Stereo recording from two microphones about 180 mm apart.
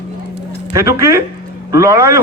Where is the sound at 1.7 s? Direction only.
15° right (ahead or behind).